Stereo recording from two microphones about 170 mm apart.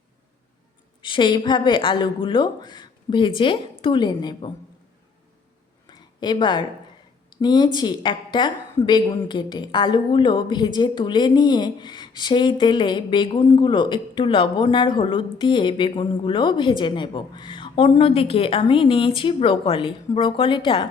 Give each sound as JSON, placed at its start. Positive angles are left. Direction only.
{"t": 1.0, "sound": "a woman's voice", "side_deg": 30}
{"t": 5.9, "sound": "a sound", "side_deg": 25}
{"t": 7.3, "sound": "a woman's voice", "side_deg": 25}